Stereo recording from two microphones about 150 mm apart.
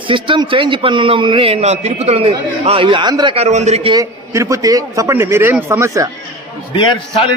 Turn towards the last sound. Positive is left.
turn(degrees=35)  # may be behind; listen again after turning